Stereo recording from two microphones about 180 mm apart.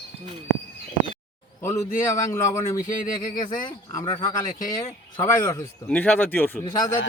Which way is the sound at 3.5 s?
45° left (ahead or behind).